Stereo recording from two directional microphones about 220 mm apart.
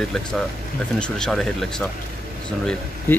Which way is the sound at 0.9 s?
5° left (ahead or behind).